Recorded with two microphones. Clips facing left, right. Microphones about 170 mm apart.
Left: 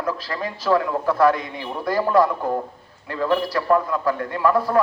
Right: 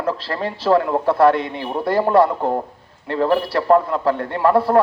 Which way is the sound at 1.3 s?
60° right (ahead or behind).